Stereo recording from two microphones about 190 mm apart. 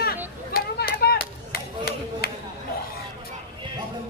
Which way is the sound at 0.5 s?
55° left (ahead or behind).